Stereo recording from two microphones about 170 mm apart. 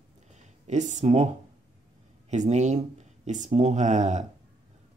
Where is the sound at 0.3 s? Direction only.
45° right (ahead or behind).